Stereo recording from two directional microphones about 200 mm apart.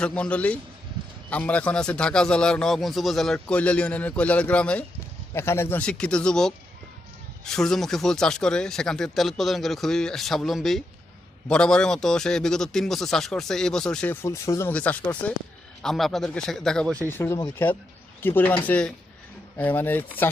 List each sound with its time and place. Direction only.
0.0 s a man's voice: 5° left (ahead or behind)